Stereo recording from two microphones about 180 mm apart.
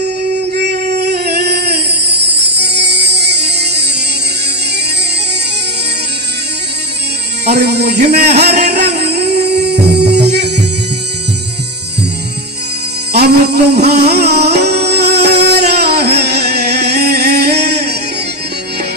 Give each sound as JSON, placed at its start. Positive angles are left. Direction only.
{"t": 0.9, "sound": "a sound", "side_deg": -65}
{"t": 7.4, "sound": "speech", "side_deg": -65}
{"t": 8.4, "sound": "music", "side_deg": -65}
{"t": 13.1, "sound": "music", "side_deg": -65}